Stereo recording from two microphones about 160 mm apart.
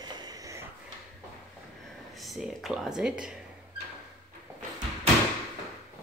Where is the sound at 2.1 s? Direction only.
Centre (ahead or behind).